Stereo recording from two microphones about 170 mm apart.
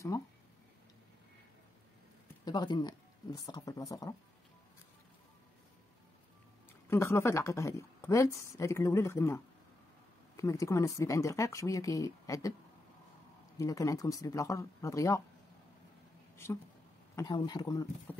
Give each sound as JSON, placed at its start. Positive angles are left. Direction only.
{"t": 0.1, "sound": "speech", "side_deg": 20}
{"t": 2.4, "sound": "speech", "side_deg": 25}
{"t": 6.9, "sound": "a woman's voice", "side_deg": 15}
{"t": 13.6, "sound": "speech", "side_deg": 20}
{"t": 17.1, "sound": "speech", "side_deg": 20}